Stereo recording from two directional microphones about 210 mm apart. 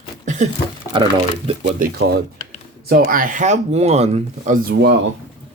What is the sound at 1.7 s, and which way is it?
Speech, 40° right (ahead or behind).